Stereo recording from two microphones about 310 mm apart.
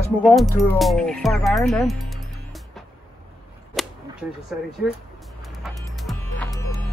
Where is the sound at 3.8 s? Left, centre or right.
Centre.